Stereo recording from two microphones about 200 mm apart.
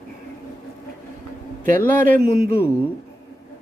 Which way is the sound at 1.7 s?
10° left (ahead or behind).